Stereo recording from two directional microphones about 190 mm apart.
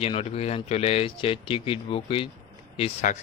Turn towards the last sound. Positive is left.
turn(degrees=35)  # may be behind; listen again after turning